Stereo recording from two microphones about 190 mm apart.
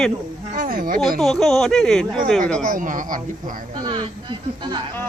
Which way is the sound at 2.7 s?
45° right (ahead or behind).